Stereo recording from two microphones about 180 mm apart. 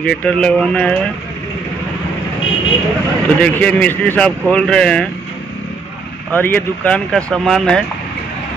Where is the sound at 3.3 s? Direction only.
10° left (ahead or behind).